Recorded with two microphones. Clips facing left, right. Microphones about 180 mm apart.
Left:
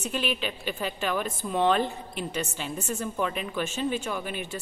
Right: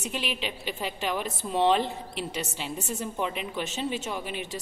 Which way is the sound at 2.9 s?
20° right (ahead or behind).